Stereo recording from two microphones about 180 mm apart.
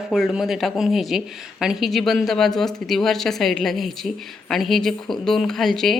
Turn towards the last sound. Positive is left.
turn(degrees=0)  # may be behind; listen again after turning